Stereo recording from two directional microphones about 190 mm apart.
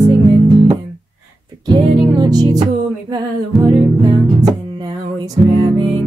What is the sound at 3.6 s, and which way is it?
Music, 20° right (ahead or behind).